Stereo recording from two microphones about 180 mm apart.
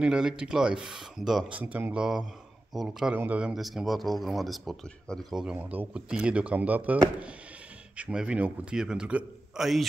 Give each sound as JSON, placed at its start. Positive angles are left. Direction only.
{"t": 0.0, "sound": "speech", "side_deg": -5}
{"t": 8.0, "sound": "speech", "side_deg": -5}